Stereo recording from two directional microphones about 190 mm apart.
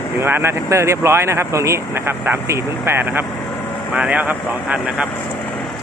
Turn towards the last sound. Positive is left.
turn(degrees=-5)  # may be behind; listen again after turning